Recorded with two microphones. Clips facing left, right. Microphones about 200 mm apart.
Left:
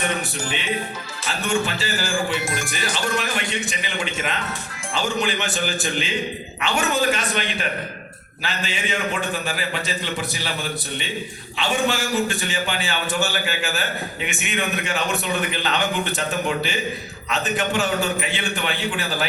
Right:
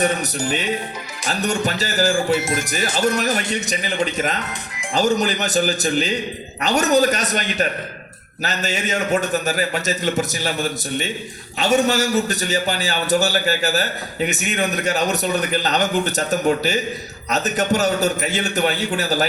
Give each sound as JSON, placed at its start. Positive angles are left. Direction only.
{"t": 1.3, "sound": "a man's voice", "side_deg": -40}
{"t": 2.4, "sound": "speech", "side_deg": -25}
{"t": 2.9, "sound": "a man's voice", "side_deg": -40}